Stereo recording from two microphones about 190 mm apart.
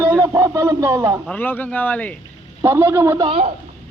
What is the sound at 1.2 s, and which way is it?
Speech, 10° left (ahead or behind).